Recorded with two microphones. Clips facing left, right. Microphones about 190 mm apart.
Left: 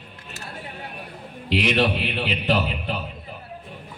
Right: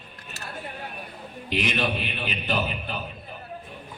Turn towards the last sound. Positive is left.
turn(degrees=70)  # may be behind; listen again after turning